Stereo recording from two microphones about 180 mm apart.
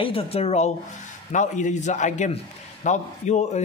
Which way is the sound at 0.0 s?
30° left (ahead or behind).